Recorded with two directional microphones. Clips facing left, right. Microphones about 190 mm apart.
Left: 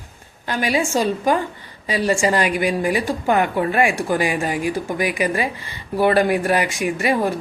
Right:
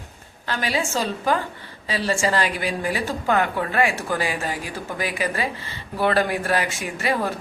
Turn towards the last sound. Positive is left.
turn(degrees=15)  # may be behind; listen again after turning